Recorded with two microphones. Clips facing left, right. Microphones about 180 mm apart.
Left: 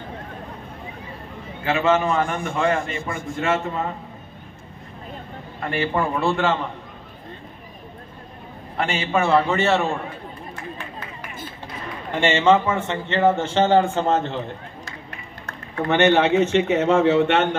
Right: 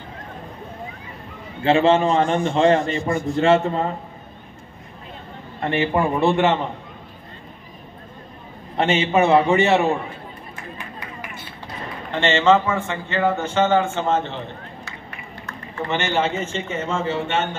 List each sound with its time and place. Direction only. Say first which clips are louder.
1.6 s a man's voice: right 4 dB; 30° right (ahead or behind)
5.6 s a man's voice: right 3 dB; 20° right (ahead or behind)
8.7 s a man's voice: right 4 dB; 25° right (ahead or behind)
12.1 s a man's voice: even; 10° left (ahead or behind); by 14.2 s 40° left (ahead or behind)
15.7 s speech: left 6 dB; 60° left (ahead or behind)